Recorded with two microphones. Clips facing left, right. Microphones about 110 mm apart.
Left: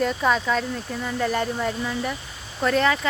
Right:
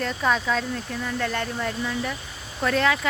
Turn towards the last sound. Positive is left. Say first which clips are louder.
# left 2 dB
turn(degrees=0)  # may be behind; listen again after turning